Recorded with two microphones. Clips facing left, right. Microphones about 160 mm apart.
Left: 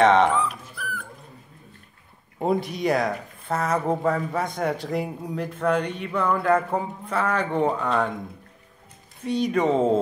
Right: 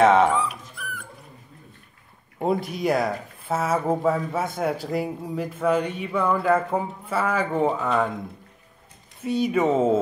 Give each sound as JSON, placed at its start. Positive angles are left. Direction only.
{"t": 0.0, "sound": "dog", "side_deg": -5}
{"t": 2.4, "sound": "speech", "side_deg": 0}
{"t": 9.2, "sound": "speech", "side_deg": -5}